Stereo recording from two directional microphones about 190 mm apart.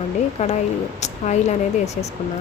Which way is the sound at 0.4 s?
40° left (ahead or behind).